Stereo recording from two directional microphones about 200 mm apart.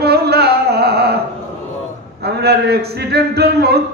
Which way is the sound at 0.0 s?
55° right (ahead or behind).